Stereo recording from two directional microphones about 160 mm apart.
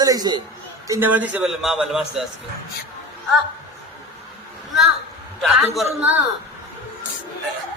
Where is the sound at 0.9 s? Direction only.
15° right (ahead or behind).